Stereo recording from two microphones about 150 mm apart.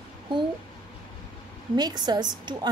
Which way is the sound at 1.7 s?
25° right (ahead or behind).